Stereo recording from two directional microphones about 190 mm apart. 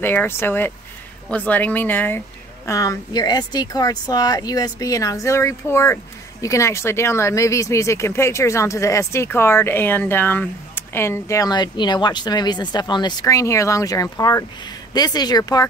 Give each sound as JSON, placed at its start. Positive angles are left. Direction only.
{"t": 0.0, "sound": "speech", "side_deg": 10}